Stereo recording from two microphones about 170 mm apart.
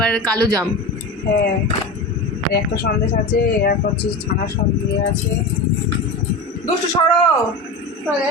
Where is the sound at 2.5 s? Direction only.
65° left (ahead or behind).